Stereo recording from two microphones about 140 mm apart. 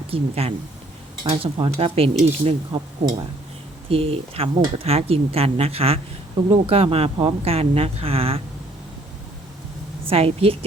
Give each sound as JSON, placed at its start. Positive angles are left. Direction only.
{"t": 0.1, "sound": "speech", "side_deg": -45}
{"t": 10.1, "sound": "speech", "side_deg": -45}